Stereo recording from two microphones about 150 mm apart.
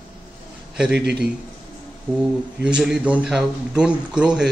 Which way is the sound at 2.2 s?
5° right (ahead or behind).